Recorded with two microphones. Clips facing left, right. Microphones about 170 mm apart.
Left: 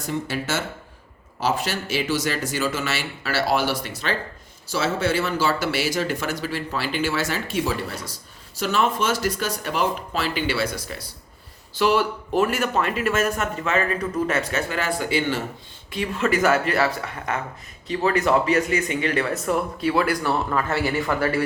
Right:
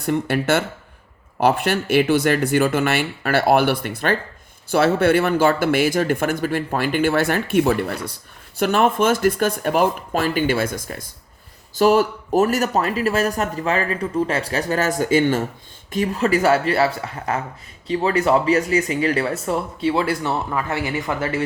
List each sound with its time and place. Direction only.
0.0 s speech: 60° right (ahead or behind); by 21.4 s 20° right (ahead or behind)